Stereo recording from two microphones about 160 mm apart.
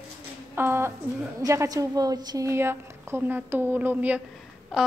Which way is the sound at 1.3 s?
20° right (ahead or behind).